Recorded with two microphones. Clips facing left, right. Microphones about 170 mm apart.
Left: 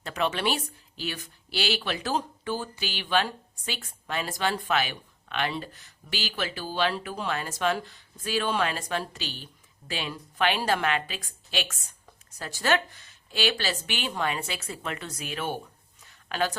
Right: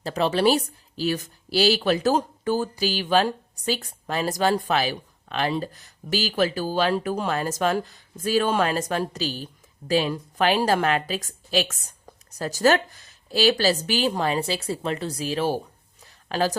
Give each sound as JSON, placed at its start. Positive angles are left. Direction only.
{"t": 0.0, "sound": "speech", "side_deg": -35}